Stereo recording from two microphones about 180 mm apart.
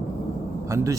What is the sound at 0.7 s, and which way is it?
Speech, 15° right (ahead or behind).